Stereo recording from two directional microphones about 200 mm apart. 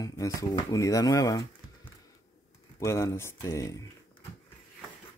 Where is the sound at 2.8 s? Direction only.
15° left (ahead or behind).